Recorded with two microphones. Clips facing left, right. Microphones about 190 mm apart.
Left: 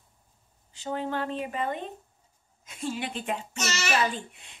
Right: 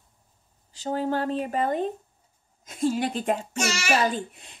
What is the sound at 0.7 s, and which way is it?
A child's voice, 35° right (ahead or behind).